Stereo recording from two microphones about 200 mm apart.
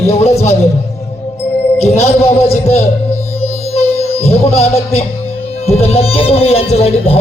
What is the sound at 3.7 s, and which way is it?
Music, 30° left (ahead or behind).